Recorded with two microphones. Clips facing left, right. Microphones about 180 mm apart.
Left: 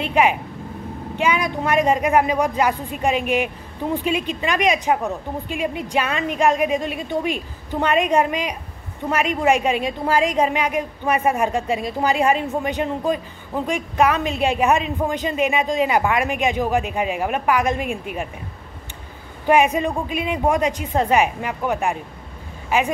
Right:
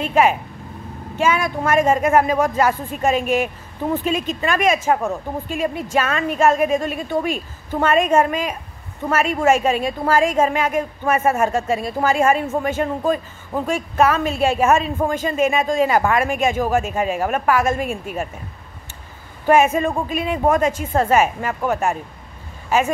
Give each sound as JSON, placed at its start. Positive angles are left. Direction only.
{"t": 0.0, "sound": "speech", "side_deg": 15}
{"t": 19.4, "sound": "speech", "side_deg": 15}